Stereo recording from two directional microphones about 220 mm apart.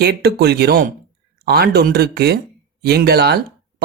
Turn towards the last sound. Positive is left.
turn(degrees=-45)  # may be behind; listen again after turning